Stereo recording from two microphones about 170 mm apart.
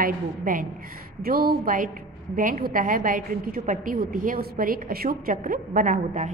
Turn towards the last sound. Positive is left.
turn(degrees=-50)  # may be behind; listen again after turning